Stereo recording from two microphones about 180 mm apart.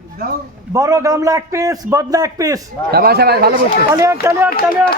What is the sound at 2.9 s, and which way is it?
Speech, 60° right (ahead or behind).